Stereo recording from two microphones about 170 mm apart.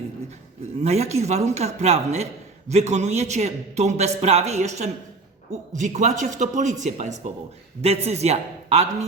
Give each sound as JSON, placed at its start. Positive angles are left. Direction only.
{"t": 0.8, "sound": "a man's voice", "side_deg": -40}